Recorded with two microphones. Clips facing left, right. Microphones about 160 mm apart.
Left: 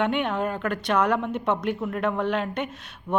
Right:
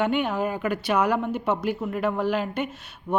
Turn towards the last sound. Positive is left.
turn(degrees=-10)  # may be behind; listen again after turning